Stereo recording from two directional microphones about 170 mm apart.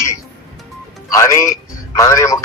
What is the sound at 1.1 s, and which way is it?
Speech, 20° left (ahead or behind).